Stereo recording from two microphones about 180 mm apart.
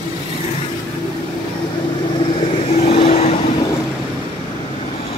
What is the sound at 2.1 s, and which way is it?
Vehicle, 30° left (ahead or behind).